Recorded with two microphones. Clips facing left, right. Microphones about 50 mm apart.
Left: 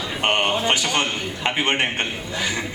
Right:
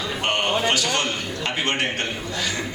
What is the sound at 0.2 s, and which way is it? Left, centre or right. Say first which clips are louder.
Speech: left 2 dB; left.